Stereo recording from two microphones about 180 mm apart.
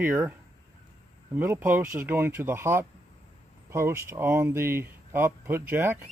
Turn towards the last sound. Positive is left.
turn(degrees=-15)  # may be behind; listen again after turning